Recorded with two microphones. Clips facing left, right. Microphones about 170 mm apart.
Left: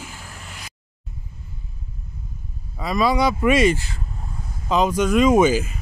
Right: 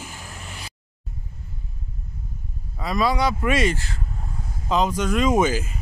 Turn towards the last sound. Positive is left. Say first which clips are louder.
# left 4 dB
turn(degrees=15)  # may be behind; listen again after turning